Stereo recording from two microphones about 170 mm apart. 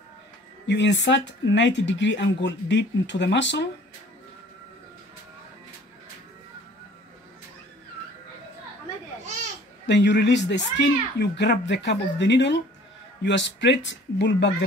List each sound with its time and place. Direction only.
0.7 s speech: 90° left
9.8 s speech: 90° left